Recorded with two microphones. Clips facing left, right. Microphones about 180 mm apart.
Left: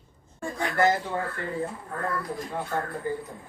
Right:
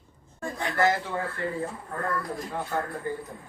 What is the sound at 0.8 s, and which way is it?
Speech, 20° left (ahead or behind).